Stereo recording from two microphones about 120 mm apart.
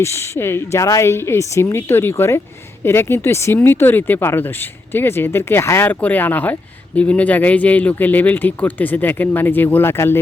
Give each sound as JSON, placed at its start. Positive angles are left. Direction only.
{"t": 0.0, "sound": "speech", "side_deg": 20}